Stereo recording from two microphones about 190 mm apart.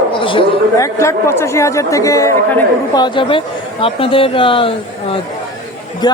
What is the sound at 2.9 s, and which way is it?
Speech, 25° left (ahead or behind).